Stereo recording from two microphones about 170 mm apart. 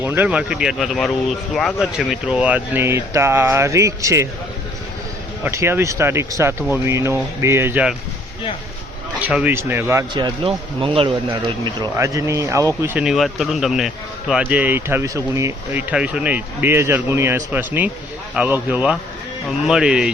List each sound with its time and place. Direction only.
0.0 s speech: 10° right (ahead or behind)
5.4 s speech: 15° right (ahead or behind)
9.2 s speech: 10° right (ahead or behind)